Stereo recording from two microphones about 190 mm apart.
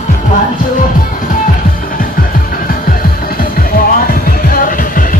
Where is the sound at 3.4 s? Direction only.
50° left (ahead or behind).